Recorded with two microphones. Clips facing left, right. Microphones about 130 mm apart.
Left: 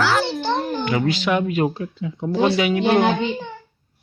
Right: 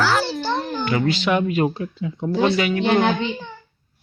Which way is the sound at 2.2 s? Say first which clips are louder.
Left 1 dB; 15° left (ahead or behind).